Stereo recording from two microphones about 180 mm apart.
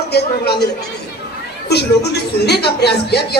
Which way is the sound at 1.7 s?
65° left (ahead or behind).